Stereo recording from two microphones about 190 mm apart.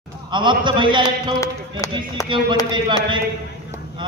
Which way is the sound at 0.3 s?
25° right (ahead or behind).